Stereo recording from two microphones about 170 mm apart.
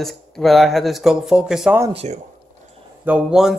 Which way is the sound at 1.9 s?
35° right (ahead or behind).